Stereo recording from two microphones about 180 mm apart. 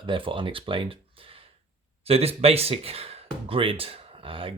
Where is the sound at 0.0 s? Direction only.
30° right (ahead or behind).